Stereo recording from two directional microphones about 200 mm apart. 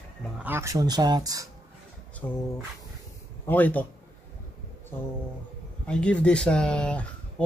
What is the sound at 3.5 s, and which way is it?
Speech, 10° left (ahead or behind).